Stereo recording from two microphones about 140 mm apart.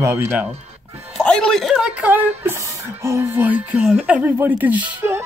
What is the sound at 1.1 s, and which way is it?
Speech, 5° left (ahead or behind).